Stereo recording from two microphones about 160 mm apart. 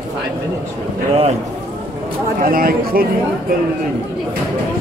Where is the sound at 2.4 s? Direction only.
65° right (ahead or behind).